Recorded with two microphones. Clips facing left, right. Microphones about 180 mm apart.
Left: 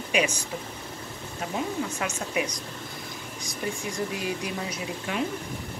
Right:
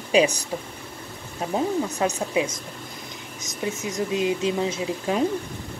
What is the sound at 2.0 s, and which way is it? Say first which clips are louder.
Speech: right 6 dB; 35° right (ahead or behind).